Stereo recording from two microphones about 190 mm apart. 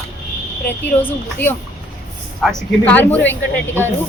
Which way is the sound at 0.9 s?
10° left (ahead or behind).